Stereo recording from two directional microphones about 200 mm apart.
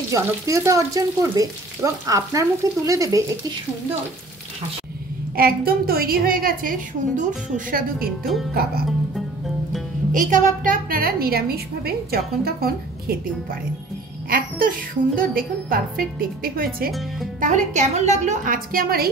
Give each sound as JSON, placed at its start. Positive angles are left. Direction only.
{"t": 0.1, "sound": "frying", "side_deg": -15}
{"t": 5.3, "sound": "a woman's voice", "side_deg": -50}
{"t": 10.1, "sound": "a woman's voice", "side_deg": -40}